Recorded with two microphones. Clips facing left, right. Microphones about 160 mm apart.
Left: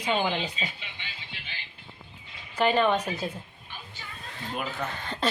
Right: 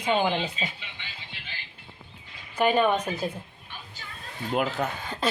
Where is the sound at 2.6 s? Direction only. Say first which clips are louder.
Right 1 dB; 10° right (ahead or behind).